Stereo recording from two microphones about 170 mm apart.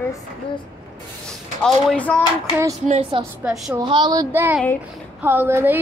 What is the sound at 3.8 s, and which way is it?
Speech, 25° right (ahead or behind).